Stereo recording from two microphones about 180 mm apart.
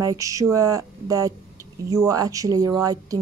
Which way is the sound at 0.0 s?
20° right (ahead or behind).